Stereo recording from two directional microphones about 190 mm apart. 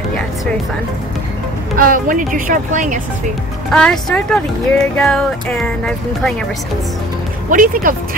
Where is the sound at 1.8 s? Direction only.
45° right (ahead or behind).